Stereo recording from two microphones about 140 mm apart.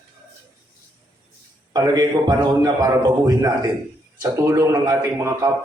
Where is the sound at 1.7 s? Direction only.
25° right (ahead or behind).